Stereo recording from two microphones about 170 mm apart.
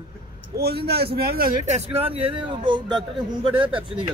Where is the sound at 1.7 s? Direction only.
40° right (ahead or behind).